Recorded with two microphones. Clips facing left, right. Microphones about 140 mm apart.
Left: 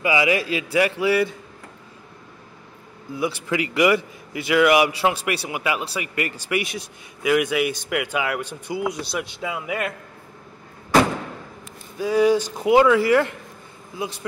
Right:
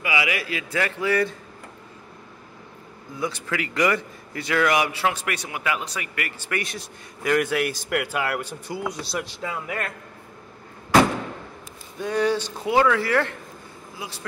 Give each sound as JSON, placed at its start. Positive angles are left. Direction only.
{"t": 0.0, "sound": "a man's voice", "side_deg": 25}
{"t": 3.2, "sound": "a man's voice", "side_deg": 15}
{"t": 12.0, "sound": "a man's voice", "side_deg": 10}